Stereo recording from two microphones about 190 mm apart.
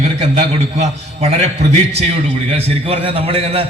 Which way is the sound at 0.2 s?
35° right (ahead or behind).